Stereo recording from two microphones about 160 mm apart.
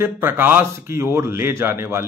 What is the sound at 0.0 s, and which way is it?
Speech, 15° right (ahead or behind).